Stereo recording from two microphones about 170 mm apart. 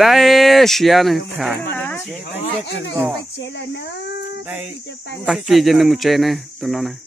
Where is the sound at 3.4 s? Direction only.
90° left.